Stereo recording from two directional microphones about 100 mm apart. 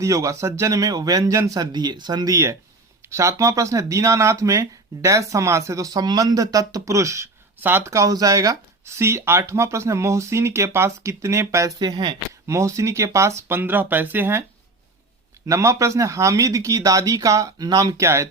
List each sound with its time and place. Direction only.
0.0 s speech: 30° right (ahead or behind)
2.3 s speech: 30° right (ahead or behind)
7.9 s speech: 35° right (ahead or behind)
11.8 s speech: 45° right (ahead or behind)
12.5 s speech: 30° right (ahead or behind)
15.4 s speech: 30° right (ahead or behind)